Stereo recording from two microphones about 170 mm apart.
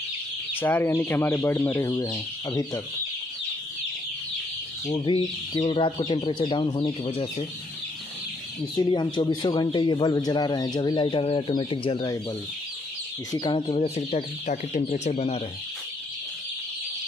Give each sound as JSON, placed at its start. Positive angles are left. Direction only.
{"t": 0.6, "sound": "speech", "side_deg": 10}
{"t": 4.9, "sound": "speech", "side_deg": 30}
{"t": 8.7, "sound": "speech", "side_deg": 25}
{"t": 13.3, "sound": "speech", "side_deg": 25}
{"t": 13.7, "sound": "speech", "side_deg": 40}